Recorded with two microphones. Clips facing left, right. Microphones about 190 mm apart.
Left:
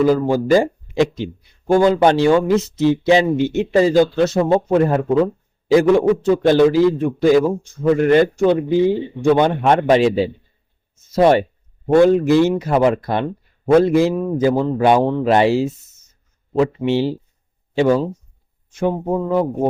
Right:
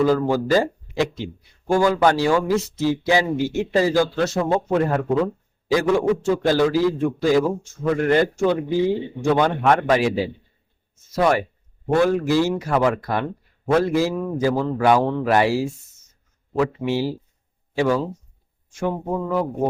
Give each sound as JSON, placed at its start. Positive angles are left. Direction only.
{"t": 0.0, "sound": "a man's voice", "side_deg": 15}